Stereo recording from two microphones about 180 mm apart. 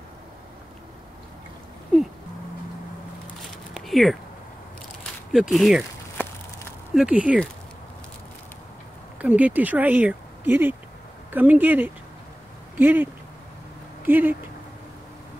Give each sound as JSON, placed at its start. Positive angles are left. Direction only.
{"t": 3.7, "sound": "a sound", "side_deg": 0}
{"t": 5.3, "sound": "speech", "side_deg": 0}
{"t": 6.9, "sound": "speech", "side_deg": -5}
{"t": 9.2, "sound": "speech", "side_deg": -10}